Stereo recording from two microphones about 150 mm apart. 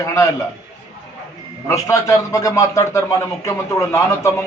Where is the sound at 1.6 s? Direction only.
20° left (ahead or behind).